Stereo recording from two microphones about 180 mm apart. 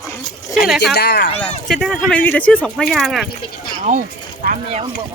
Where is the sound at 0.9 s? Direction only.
65° left (ahead or behind).